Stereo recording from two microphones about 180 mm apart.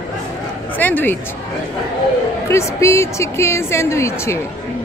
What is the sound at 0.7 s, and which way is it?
Speech, 10° left (ahead or behind).